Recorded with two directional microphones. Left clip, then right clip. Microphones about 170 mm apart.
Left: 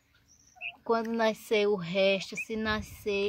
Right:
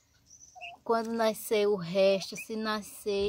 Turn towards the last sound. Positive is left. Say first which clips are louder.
# even
turn(degrees=0)  # may be behind; listen again after turning